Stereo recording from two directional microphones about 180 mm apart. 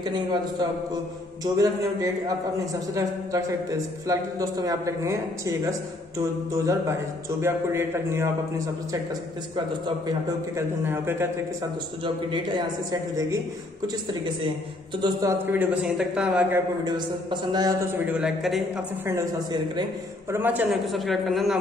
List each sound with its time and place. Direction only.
0.0 s a man's voice: 25° right (ahead or behind)
10.0 s a man's voice: 15° right (ahead or behind)
12.9 s a man's voice: 20° right (ahead or behind)
15.0 s speech: 25° right (ahead or behind)
15.4 s a man's voice: 10° right (ahead or behind)
16.8 s speech: 25° right (ahead or behind)
18.1 s a man's voice: 5° right (ahead or behind)
19.0 s speech: 20° right (ahead or behind)
20.3 s a man's voice: 10° right (ahead or behind)